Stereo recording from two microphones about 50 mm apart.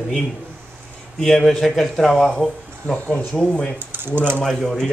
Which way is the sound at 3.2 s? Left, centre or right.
Centre.